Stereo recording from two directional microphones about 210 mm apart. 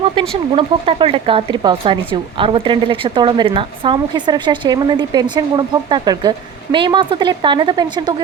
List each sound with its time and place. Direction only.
0.5 s speech: 25° right (ahead or behind)